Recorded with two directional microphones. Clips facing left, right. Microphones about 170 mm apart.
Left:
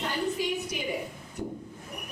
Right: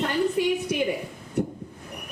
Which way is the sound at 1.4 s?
65° right (ahead or behind).